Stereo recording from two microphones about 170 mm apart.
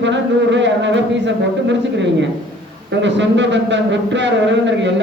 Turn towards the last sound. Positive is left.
turn(degrees=-90)